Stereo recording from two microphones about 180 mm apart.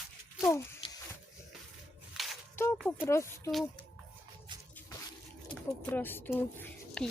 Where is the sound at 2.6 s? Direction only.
15° left (ahead or behind).